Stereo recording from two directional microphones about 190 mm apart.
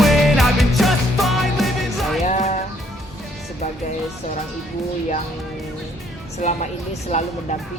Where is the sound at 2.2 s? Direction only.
40° left (ahead or behind).